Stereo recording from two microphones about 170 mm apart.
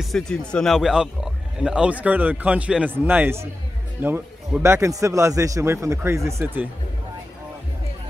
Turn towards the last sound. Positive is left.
turn(degrees=-10)  # may be behind; listen again after turning